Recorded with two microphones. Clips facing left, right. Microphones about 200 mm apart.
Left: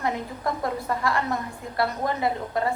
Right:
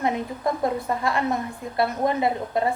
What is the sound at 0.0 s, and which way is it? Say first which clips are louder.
A woman's voice: right 3 dB; 20° right (ahead or behind).